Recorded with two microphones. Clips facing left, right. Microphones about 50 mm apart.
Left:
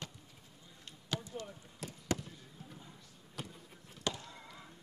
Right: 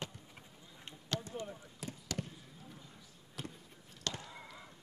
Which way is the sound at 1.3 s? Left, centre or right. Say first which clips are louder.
Right 1 dB; centre.